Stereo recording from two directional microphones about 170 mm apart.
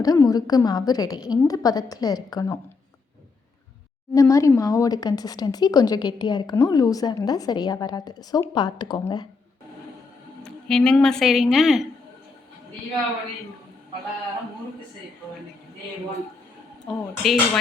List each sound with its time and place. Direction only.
0.0 s speech: 20° left (ahead or behind)
4.1 s speech: 20° left (ahead or behind)
10.4 s a woman's voice: 5° left (ahead or behind)
16.8 s speech: centre (ahead or behind)